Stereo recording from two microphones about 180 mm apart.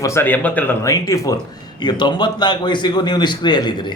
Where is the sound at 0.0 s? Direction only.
15° left (ahead or behind).